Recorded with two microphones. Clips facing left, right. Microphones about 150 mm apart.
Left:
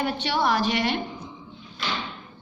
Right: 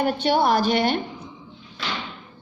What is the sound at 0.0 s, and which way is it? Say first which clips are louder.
Speech: right 5 dB; 45° right (ahead or behind).